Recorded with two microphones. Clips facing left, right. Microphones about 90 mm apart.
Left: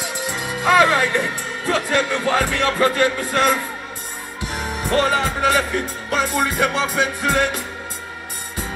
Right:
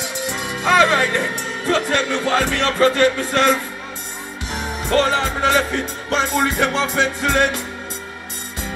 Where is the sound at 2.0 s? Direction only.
20° right (ahead or behind).